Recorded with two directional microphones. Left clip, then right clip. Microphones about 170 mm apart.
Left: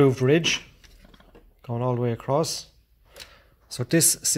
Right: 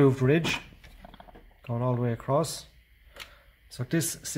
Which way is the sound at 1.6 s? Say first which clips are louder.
Left 4 dB; 25° left (ahead or behind).